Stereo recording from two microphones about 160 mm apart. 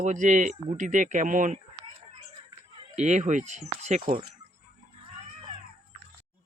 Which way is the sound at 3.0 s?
45° right (ahead or behind).